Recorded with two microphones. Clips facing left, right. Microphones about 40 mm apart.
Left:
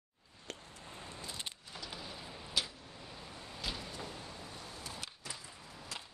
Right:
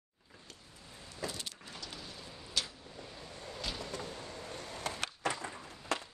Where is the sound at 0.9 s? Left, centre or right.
Left.